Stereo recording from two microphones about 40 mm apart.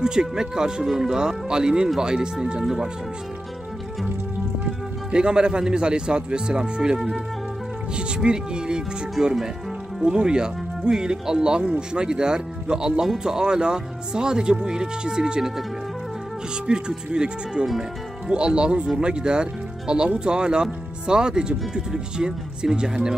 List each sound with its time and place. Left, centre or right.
0.0 s speech: centre
4.6 s a man's voice: right
9.2 s speech: centre
16.6 s speech: right